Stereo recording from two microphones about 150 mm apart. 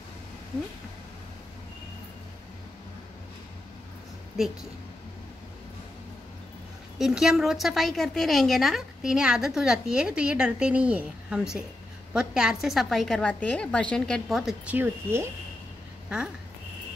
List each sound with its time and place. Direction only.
7.0 s a woman's voice: centre (ahead or behind)
14.8 s speech: 15° right (ahead or behind)